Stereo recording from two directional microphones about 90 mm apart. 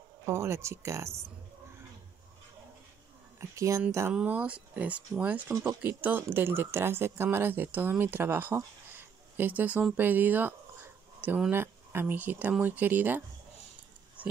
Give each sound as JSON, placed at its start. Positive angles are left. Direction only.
{"t": 0.2, "sound": "speech", "side_deg": -30}
{"t": 3.3, "sound": "speech", "side_deg": -35}
{"t": 4.1, "sound": "speech", "side_deg": -10}
{"t": 9.9, "sound": "a sound", "side_deg": -20}
{"t": 11.5, "sound": "speech", "side_deg": -25}